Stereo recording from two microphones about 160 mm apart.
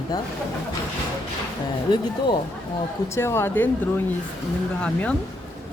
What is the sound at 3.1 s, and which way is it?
Speech, 15° left (ahead or behind).